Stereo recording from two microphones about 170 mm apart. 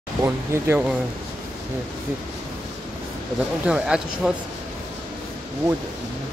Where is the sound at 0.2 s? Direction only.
15° right (ahead or behind).